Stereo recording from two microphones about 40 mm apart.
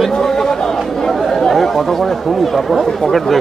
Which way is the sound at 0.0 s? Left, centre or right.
Centre.